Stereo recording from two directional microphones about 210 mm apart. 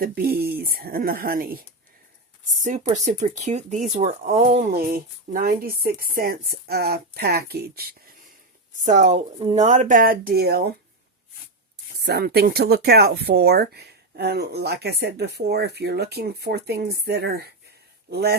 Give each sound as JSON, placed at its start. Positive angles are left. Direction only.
{"t": 0.0, "sound": "speech", "side_deg": -45}
{"t": 4.7, "sound": "speech", "side_deg": -45}
{"t": 8.8, "sound": "speech", "side_deg": -35}
{"t": 11.9, "sound": "speech", "side_deg": -50}